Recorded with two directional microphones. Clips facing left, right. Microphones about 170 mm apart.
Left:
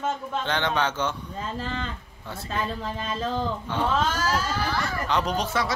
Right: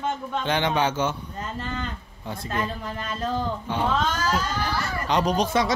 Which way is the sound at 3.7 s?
15° right (ahead or behind).